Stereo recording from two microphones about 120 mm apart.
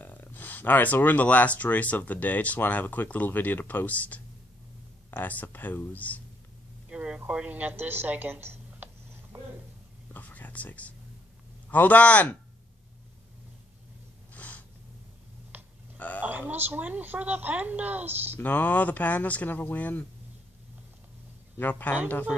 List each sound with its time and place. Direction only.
0.0 s speech: 15° left (ahead or behind)
6.9 s a sound: 10° right (ahead or behind)
10.1 s whispering: 15° left (ahead or behind)
11.7 s speech: 15° left (ahead or behind)
14.3 s snort: 15° left (ahead or behind)
15.5 s burping: 15° right (ahead or behind)
16.0 s a sound: 15° left (ahead or behind)
16.3 s a woman's voice: 15° right (ahead or behind)
18.4 s speech: 15° left (ahead or behind)
21.5 s speech: 15° left (ahead or behind)